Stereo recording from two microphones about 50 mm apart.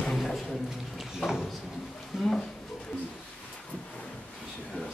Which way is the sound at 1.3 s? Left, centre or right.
Centre.